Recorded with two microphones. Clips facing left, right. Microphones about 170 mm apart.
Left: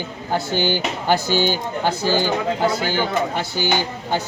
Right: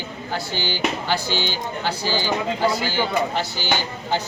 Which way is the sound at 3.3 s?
55° left (ahead or behind).